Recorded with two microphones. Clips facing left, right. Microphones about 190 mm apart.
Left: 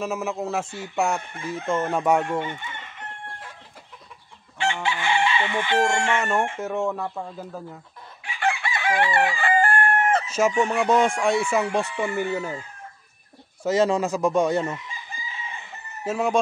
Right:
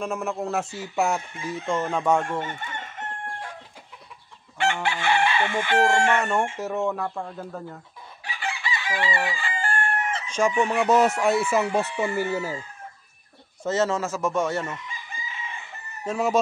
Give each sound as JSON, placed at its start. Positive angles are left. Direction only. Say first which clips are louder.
{"t": 0.0, "sound": "speech", "louder": "left 1 dB", "side_deg": 5}
{"t": 2.4, "sound": "chicken", "louder": "even", "side_deg": -45}
{"t": 4.8, "sound": "chicken", "louder": "left 1 dB", "side_deg": -60}
{"t": 5.8, "sound": "speech", "louder": "right 3 dB", "side_deg": 0}
{"t": 8.4, "sound": "chicken", "louder": "left 6 dB", "side_deg": 55}
{"t": 10.2, "sound": "chicken", "louder": "left 1 dB", "side_deg": 5}
{"t": 10.6, "sound": "speech", "louder": "right 2 dB", "side_deg": 0}
{"t": 13.7, "sound": "speech", "louder": "left 3 dB", "side_deg": 15}
{"t": 16.0, "sound": "chicken", "louder": "left 1 dB", "side_deg": 0}